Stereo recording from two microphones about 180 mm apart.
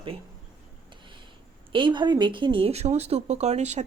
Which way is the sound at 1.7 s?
25° right (ahead or behind).